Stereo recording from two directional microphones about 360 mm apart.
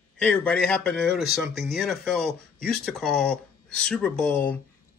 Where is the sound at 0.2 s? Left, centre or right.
Centre.